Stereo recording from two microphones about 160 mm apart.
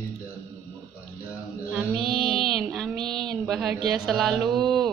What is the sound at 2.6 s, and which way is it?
Child singing, centre (ahead or behind).